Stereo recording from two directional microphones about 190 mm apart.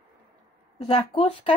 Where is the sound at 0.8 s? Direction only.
30° left (ahead or behind).